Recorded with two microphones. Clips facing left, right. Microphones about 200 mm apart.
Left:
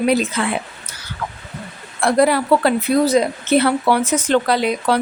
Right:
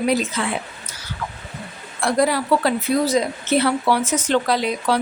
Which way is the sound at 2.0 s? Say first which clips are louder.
Left 4 dB; 60° left (ahead or behind).